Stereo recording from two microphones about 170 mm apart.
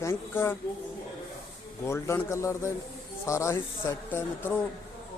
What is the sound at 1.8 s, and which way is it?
Speech, 15° left (ahead or behind).